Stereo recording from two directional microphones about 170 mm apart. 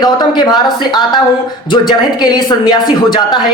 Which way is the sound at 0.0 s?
25° left (ahead or behind).